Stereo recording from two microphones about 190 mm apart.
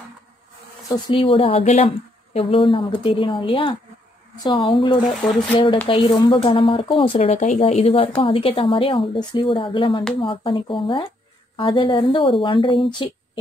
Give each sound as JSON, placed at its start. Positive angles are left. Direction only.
{"t": 0.8, "sound": "a woman's voice", "side_deg": 25}